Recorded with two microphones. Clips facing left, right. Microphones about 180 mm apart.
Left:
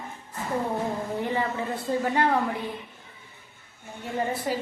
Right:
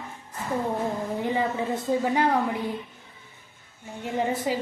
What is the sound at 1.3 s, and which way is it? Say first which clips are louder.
Speech: right 5 dB; 15° right (ahead or behind).